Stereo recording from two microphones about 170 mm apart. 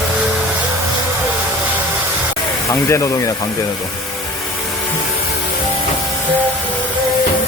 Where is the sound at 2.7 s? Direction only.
15° left (ahead or behind).